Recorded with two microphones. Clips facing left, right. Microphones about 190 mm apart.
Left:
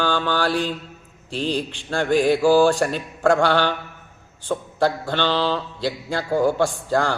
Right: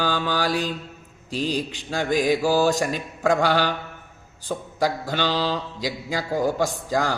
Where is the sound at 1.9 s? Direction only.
10° right (ahead or behind).